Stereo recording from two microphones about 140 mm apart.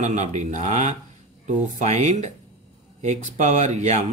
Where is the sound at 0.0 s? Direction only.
55° right (ahead or behind).